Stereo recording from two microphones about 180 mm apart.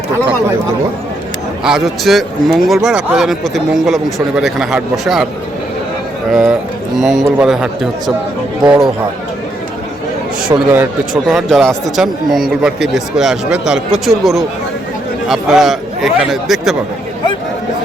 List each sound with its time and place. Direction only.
1.6 s a man's voice: centre (ahead or behind)
6.3 s a man's voice: centre (ahead or behind)
10.5 s speech: 25° right (ahead or behind)
11.3 s a man's voice: centre (ahead or behind)